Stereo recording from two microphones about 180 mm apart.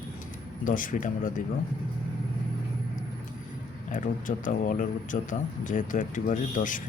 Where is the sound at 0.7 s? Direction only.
50° left (ahead or behind).